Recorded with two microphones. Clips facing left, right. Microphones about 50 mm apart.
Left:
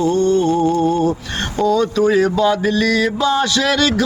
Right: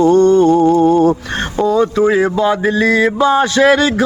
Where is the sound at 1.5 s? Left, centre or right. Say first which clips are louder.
Right 2 dB; right.